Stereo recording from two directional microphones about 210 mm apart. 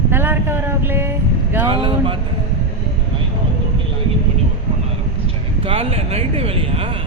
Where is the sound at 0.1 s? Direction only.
10° right (ahead or behind).